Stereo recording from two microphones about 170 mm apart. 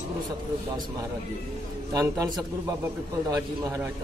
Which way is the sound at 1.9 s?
20° right (ahead or behind).